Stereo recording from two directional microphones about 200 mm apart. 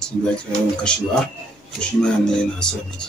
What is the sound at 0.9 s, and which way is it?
Speech, 5° left (ahead or behind).